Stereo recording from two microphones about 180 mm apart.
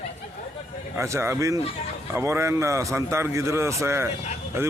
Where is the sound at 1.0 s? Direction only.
15° right (ahead or behind).